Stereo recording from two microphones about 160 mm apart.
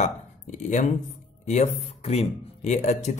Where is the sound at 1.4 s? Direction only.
40° left (ahead or behind).